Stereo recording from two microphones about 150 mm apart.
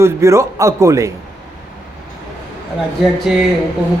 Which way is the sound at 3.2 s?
Centre (ahead or behind).